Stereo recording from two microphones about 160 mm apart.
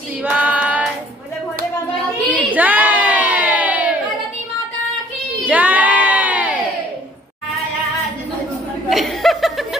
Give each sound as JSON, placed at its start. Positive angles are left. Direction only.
{"t": 0.2, "sound": "child singing", "side_deg": -10}
{"t": 2.5, "sound": "a sound", "side_deg": -10}
{"t": 5.4, "sound": "crowd", "side_deg": -10}
{"t": 8.9, "sound": "chuckle", "side_deg": 0}